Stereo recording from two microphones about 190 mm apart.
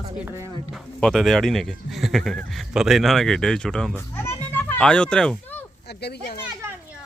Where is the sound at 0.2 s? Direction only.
15° right (ahead or behind).